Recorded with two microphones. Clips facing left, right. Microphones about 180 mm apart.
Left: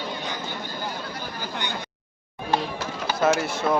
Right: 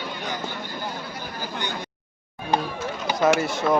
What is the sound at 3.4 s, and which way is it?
Speech, centre (ahead or behind).